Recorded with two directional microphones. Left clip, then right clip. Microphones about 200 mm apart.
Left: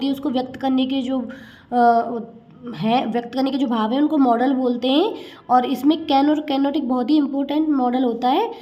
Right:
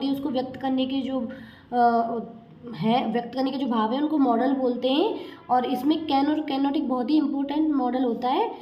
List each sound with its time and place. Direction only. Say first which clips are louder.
0.0 s a woman's voice: left 4 dB; 35° left (ahead or behind)